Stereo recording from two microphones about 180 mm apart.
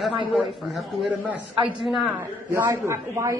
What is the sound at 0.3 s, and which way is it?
A man's voice, 5° right (ahead or behind).